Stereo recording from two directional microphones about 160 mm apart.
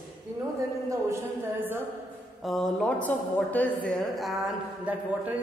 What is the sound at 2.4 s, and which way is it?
A woman's voice, centre (ahead or behind).